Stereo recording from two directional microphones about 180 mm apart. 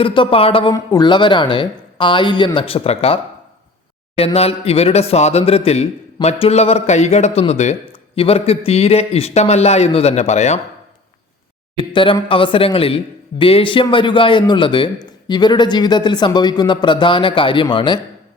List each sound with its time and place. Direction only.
0.0 s a man's voice: 30° left (ahead or behind)
11.9 s a man's voice: 30° left (ahead or behind)